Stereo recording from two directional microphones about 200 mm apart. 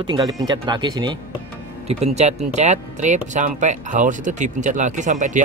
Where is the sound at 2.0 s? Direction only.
35° right (ahead or behind).